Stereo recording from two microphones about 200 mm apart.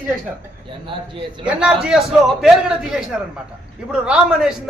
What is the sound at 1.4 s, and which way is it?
A man's voice, 5° right (ahead or behind).